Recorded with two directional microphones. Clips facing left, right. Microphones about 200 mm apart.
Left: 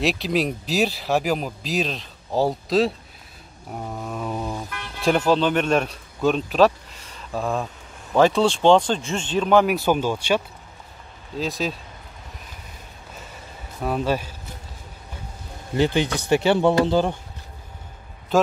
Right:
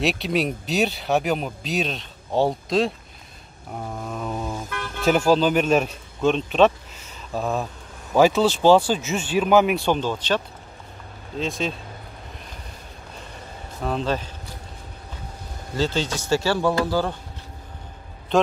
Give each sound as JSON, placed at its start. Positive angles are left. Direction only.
{"t": 0.0, "sound": "speech", "side_deg": 0}
{"t": 3.7, "sound": "vehicle", "side_deg": 0}
{"t": 7.3, "sound": "speech", "side_deg": 0}
{"t": 13.8, "sound": "speech", "side_deg": 10}
{"t": 15.7, "sound": "speech", "side_deg": 15}
{"t": 18.3, "sound": "speech", "side_deg": 5}